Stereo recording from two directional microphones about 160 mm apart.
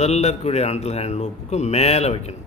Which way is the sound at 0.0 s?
45° left (ahead or behind).